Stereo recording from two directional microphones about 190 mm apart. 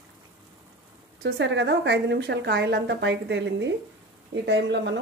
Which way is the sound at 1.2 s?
65° right (ahead or behind).